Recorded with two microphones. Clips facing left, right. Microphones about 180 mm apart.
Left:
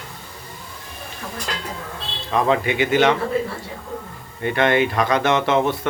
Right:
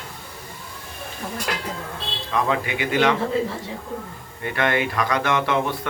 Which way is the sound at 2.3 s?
25° left (ahead or behind).